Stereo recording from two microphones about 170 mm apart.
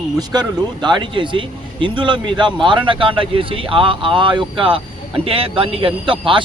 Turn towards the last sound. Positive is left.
turn(degrees=-30)  # may be behind; listen again after turning